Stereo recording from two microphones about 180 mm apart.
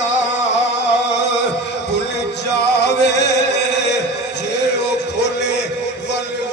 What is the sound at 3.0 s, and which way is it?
Music, 70° left (ahead or behind).